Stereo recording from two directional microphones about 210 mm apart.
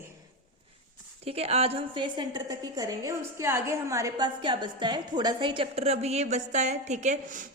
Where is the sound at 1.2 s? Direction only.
30° right (ahead or behind).